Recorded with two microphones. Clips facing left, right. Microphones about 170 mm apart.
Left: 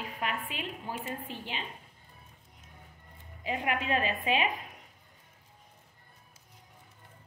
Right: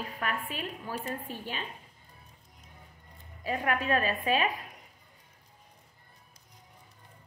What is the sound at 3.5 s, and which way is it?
A woman's voice, 20° left (ahead or behind).